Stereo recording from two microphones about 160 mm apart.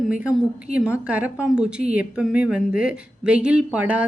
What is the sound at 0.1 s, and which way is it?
Speech, 5° right (ahead or behind).